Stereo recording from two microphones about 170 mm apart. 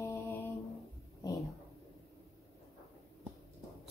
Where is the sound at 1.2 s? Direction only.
20° left (ahead or behind).